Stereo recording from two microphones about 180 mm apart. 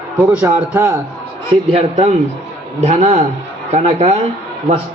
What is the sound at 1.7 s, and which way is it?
A man's voice, 35° right (ahead or behind).